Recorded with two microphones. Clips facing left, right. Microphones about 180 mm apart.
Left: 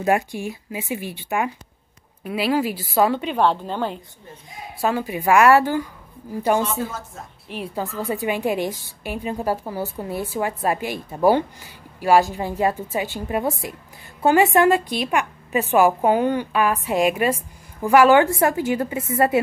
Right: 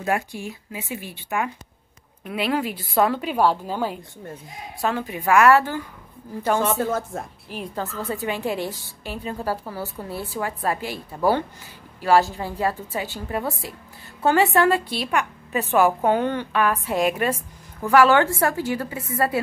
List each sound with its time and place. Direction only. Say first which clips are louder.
0.0 s a woman's voice: left 4 dB; 15° left (ahead or behind)
2.2 s a woman's voice: left 3 dB; 5° left (ahead or behind)
4.8 s a woman's voice: left 3 dB; 10° left (ahead or behind)
7.1 s a woman's voice: right 7 dB; 60° right (ahead or behind)
7.4 s a woman's voice: left 2 dB; centre (ahead or behind)
7.7 s a woman's voice: left 3 dB; 15° left (ahead or behind)